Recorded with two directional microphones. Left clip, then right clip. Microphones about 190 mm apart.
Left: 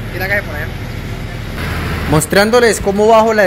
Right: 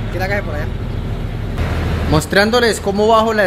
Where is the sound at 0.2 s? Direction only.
55° right (ahead or behind).